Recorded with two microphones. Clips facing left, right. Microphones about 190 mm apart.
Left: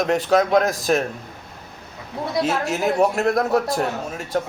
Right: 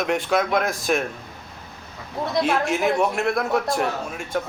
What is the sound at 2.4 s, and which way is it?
A man's voice, 40° left (ahead or behind).